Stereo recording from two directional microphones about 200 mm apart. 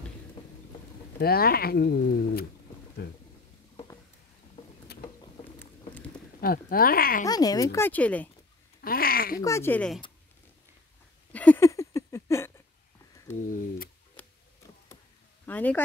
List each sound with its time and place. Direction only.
1.2 s speech: 50° left (ahead or behind)
4.9 s boat: 55° left (ahead or behind)
5.4 s boat: 10° left (ahead or behind)
6.4 s speech: 50° left (ahead or behind)
7.2 s speech: 20° left (ahead or behind)
8.8 s speech: 50° left (ahead or behind)
9.4 s speech: 15° left (ahead or behind)
11.3 s a sound: 10° left (ahead or behind)
13.4 s a sound: 40° left (ahead or behind)
15.4 s speech: 10° left (ahead or behind)